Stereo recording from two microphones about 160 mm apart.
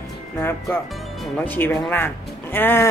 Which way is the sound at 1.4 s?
10° left (ahead or behind).